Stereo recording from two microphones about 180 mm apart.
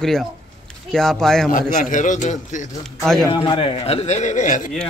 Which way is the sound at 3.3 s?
30° left (ahead or behind).